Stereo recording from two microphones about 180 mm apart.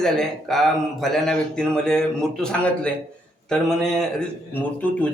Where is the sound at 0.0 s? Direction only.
Centre (ahead or behind).